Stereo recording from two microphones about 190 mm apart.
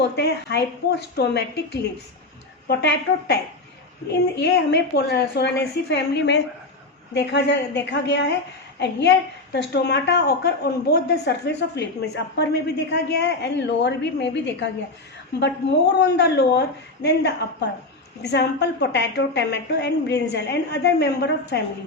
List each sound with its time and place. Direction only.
0.0 s a woman's voice: 60° left (ahead or behind)
2.6 s a woman's voice: 60° left (ahead or behind)